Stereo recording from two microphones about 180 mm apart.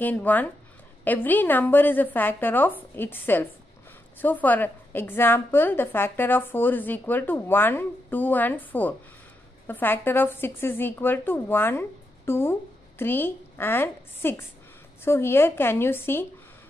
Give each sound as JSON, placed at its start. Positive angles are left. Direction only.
{"t": 0.0, "sound": "a woman's voice", "side_deg": 10}